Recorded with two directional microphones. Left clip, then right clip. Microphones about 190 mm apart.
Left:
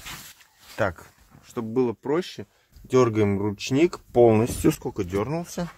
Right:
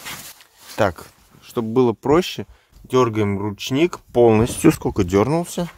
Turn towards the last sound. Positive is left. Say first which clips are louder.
# right 10 dB
turn(degrees=-35)  # may be behind; listen again after turning